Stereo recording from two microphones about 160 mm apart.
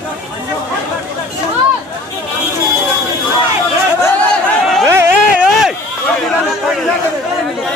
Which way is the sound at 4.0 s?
5° left (ahead or behind).